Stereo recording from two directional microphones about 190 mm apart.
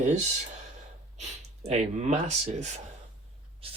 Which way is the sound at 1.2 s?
35° right (ahead or behind).